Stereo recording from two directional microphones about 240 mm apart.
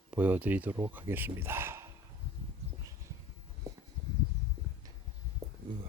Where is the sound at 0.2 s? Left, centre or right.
Centre.